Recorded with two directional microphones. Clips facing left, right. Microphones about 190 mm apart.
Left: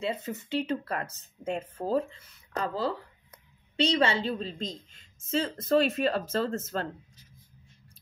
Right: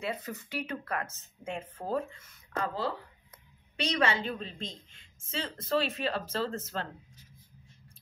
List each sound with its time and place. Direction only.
0.0 s a woman's voice: 25° left (ahead or behind); by 6.9 s 45° left (ahead or behind)